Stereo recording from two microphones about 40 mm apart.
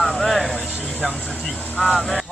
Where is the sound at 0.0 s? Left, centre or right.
Centre.